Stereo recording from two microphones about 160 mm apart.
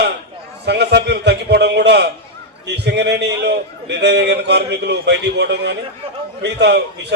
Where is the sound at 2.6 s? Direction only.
90° right.